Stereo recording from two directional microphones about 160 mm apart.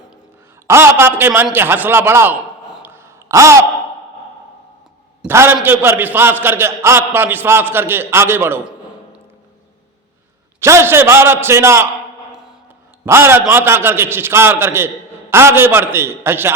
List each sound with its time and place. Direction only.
0.7 s a man's voice: 15° right (ahead or behind)
2.7 s a sound: 15° right (ahead or behind)
5.2 s a man's voice: 15° right (ahead or behind)
10.6 s a man's voice: 15° right (ahead or behind)
13.1 s a man's voice: 15° right (ahead or behind)